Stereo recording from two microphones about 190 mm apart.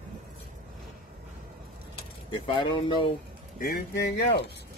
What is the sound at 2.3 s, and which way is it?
Speech, 25° left (ahead or behind).